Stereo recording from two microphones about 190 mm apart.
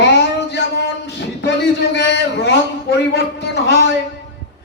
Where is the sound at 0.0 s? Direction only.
65° left (ahead or behind).